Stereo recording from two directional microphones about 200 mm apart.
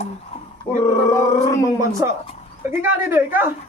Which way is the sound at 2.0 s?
15° right (ahead or behind).